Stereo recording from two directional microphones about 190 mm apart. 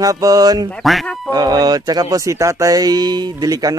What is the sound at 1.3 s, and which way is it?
Speech, 20° right (ahead or behind).